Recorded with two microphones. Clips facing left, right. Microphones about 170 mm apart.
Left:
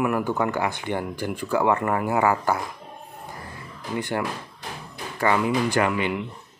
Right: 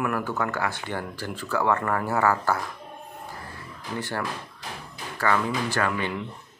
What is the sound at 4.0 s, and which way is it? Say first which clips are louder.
Speech: left 4 dB; 15° left (ahead or behind).